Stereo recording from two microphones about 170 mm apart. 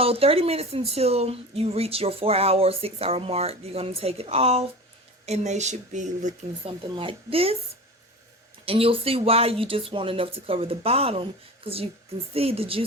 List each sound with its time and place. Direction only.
0.0 s speech: 35° right (ahead or behind)
6.9 s speech: 30° right (ahead or behind)
8.6 s speech: 35° right (ahead or behind)